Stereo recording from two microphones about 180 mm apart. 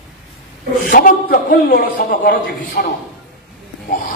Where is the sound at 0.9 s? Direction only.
50° left (ahead or behind).